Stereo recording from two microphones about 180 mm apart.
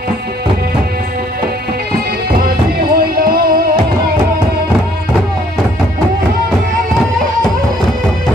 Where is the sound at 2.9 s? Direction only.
55° right (ahead or behind).